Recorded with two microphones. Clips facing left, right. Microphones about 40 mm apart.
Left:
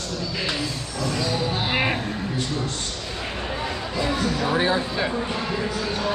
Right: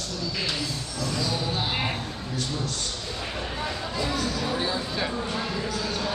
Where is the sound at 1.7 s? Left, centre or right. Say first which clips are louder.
Left 6 dB; left.